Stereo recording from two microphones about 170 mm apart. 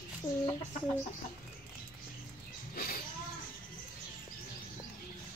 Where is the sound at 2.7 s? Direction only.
60° left (ahead or behind).